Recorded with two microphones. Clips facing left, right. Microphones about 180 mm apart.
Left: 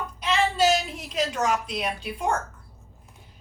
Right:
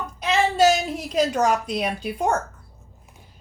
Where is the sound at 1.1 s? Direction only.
40° right (ahead or behind).